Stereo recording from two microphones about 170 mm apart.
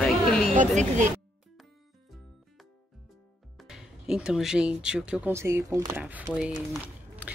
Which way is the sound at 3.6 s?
5° right (ahead or behind).